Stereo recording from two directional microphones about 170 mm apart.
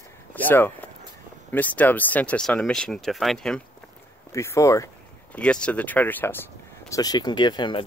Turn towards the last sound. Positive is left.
turn(degrees=25)  # may be behind; listen again after turning